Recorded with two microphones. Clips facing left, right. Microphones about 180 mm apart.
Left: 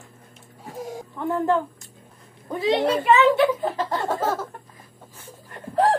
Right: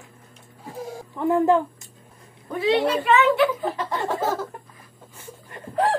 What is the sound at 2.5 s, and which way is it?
Speech, 20° left (ahead or behind).